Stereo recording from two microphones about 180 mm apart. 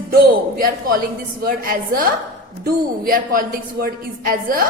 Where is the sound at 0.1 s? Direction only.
55° right (ahead or behind).